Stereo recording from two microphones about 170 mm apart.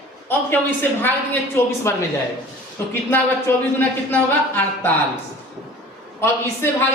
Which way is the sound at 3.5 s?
15° left (ahead or behind).